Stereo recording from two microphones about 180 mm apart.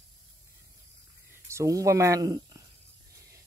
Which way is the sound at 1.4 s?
15° right (ahead or behind).